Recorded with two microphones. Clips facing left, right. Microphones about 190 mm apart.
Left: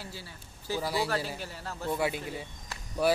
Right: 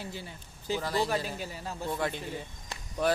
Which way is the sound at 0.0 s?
20° right (ahead or behind).